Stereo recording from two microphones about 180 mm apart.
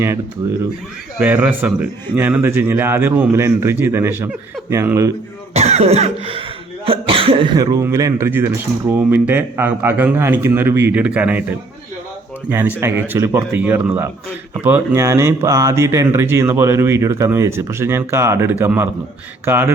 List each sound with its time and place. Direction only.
1.2 s speech: 10° right (ahead or behind)
5.5 s speech: 35° right (ahead or behind); by 11.4 s 10° right (ahead or behind)
12.5 s speech: 10° right (ahead or behind)